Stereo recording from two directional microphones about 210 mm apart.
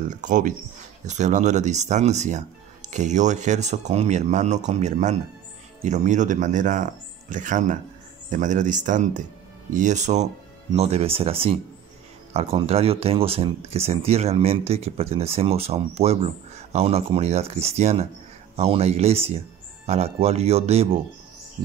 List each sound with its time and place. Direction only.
0.1 s speech: 35° right (ahead or behind)